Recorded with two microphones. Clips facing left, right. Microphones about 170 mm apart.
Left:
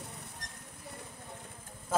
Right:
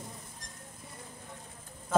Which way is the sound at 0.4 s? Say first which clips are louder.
Left 1 dB; 65° left (ahead or behind).